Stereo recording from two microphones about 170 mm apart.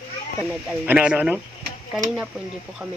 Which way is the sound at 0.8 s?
5° right (ahead or behind).